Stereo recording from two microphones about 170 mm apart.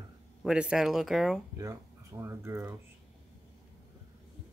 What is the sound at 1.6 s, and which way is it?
Speech, 20° right (ahead or behind).